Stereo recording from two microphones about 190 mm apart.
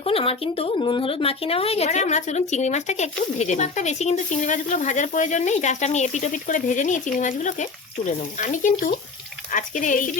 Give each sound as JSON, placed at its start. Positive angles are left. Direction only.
{"t": 0.0, "sound": "speech", "side_deg": 30}